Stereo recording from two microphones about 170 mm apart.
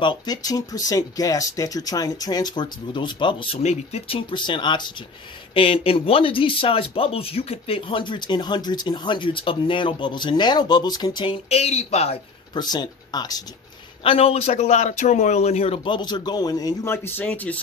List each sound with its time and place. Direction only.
0.0 s speech: 25° left (ahead or behind)
12.5 s speech: 25° left (ahead or behind)
14.0 s speech: 35° left (ahead or behind); by 17.6 s 10° left (ahead or behind)